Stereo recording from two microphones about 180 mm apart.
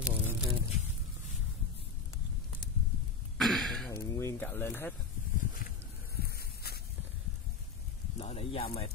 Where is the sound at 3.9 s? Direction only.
15° left (ahead or behind).